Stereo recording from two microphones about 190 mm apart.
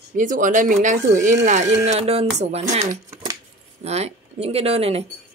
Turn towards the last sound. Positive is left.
turn(degrees=-30)  # may be behind; listen again after turning